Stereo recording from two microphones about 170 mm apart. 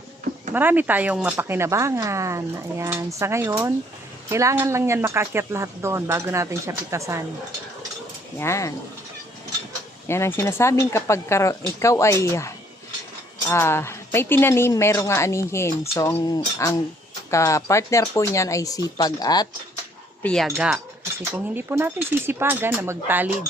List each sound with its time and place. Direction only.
0.5 s speech: 10° right (ahead or behind)
8.4 s speech: 15° left (ahead or behind)
10.1 s speech: 15° left (ahead or behind)
20.2 s speech: centre (ahead or behind)